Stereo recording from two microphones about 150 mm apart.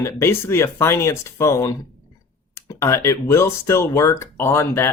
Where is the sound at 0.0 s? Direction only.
15° left (ahead or behind).